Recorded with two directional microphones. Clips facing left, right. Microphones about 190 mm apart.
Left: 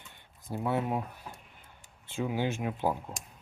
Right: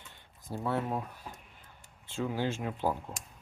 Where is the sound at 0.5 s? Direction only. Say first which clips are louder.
Left 2 dB; 15° left (ahead or behind).